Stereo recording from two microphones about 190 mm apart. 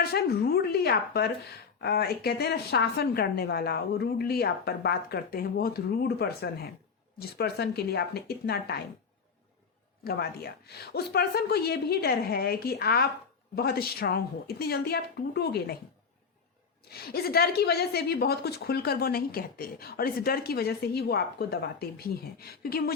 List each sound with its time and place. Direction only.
0.0 s a woman's voice: 55° left (ahead or behind)
10.0 s a woman's voice: 55° left (ahead or behind)
16.9 s a woman's voice: 55° left (ahead or behind)